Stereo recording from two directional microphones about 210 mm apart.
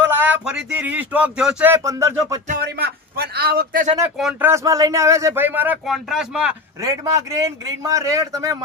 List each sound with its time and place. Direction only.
0.1 s speech: 10° right (ahead or behind)
2.5 s a man's voice: 50° right (ahead or behind)
4.2 s speech: 5° right (ahead or behind)
6.8 s speech: 15° right (ahead or behind)